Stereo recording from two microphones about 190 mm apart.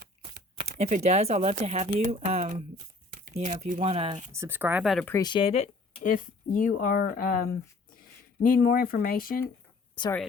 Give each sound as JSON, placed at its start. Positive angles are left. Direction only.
{"t": 0.8, "sound": "speech", "side_deg": -35}
{"t": 4.3, "sound": "speech", "side_deg": -15}
{"t": 5.0, "sound": "speech", "side_deg": 20}